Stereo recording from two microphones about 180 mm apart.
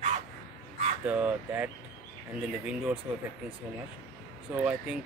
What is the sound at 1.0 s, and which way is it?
Speech, 5° right (ahead or behind).